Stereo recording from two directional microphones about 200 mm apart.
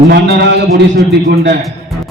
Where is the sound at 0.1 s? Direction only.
55° right (ahead or behind).